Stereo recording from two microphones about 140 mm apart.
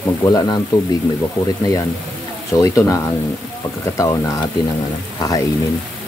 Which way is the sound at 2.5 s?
20° left (ahead or behind).